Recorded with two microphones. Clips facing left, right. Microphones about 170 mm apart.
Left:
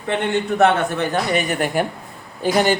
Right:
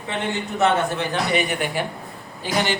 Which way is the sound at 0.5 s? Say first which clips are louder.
Left 3 dB; 55° left (ahead or behind).